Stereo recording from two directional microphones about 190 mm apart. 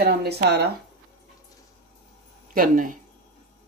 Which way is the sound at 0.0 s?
60° right (ahead or behind).